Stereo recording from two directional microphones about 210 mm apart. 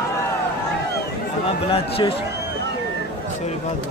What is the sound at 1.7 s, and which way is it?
Speech, 25° left (ahead or behind).